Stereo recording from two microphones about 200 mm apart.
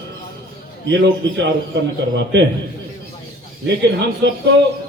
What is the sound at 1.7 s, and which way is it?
Speech, 60° right (ahead or behind).